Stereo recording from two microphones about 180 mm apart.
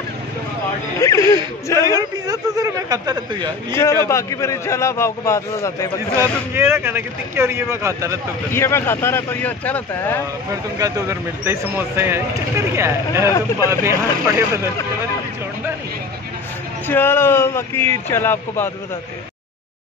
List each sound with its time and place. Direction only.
1.0 s speech: 15° left (ahead or behind)
1.8 s a man's voice: 20° right (ahead or behind)
3.7 s a man's voice: 15° left (ahead or behind)
6.5 s speech: 10° right (ahead or behind)
8.5 s a man's voice: 15° left (ahead or behind)
10.5 s speech: 15° right (ahead or behind)
16.8 s a man's voice: 10° left (ahead or behind)